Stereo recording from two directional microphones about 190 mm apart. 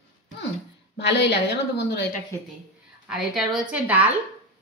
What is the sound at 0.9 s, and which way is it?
Speech, 65° left (ahead or behind).